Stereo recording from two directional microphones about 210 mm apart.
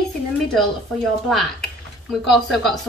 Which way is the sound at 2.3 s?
Centre (ahead or behind).